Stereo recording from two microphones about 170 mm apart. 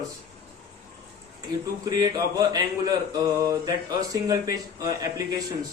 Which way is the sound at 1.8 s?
25° right (ahead or behind).